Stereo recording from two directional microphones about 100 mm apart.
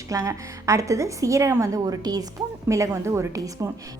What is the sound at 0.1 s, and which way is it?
A woman's voice, 30° right (ahead or behind).